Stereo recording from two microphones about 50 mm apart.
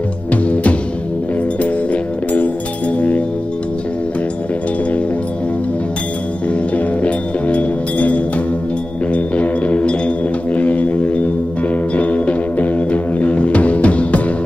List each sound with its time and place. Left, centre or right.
0.3 s music: left
7.0 s music: left